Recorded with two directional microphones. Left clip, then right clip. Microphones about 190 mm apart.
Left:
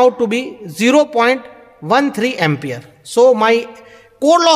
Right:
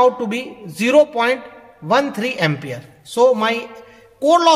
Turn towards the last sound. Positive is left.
turn(degrees=50)  # may be behind; listen again after turning